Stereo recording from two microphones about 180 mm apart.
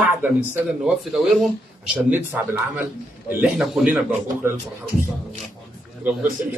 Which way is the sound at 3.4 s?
5° right (ahead or behind).